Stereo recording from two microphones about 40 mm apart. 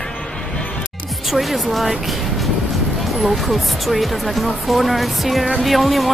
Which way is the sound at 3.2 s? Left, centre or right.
Centre.